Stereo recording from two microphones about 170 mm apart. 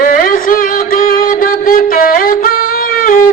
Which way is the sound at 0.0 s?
55° left (ahead or behind).